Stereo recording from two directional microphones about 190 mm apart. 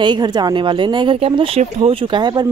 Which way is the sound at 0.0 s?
20° right (ahead or behind).